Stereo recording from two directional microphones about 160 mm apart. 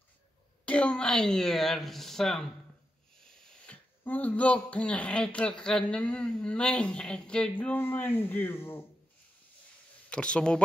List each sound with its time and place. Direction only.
0.7 s speech: 5° left (ahead or behind)
10.0 s speech: 5° left (ahead or behind)